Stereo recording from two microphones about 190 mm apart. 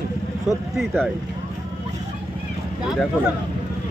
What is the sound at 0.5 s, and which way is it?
Speech, centre (ahead or behind).